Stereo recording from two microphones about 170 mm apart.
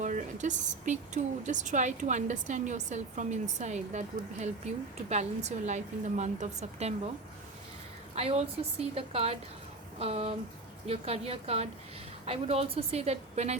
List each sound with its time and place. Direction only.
0.0 s a woman's voice: 45° right (ahead or behind)
8.1 s a woman's voice: 40° right (ahead or behind)